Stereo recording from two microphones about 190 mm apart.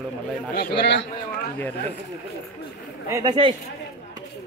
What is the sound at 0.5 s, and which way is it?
Speech, 55° left (ahead or behind).